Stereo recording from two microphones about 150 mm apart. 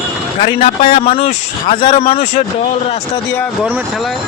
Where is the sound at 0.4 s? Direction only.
40° left (ahead or behind).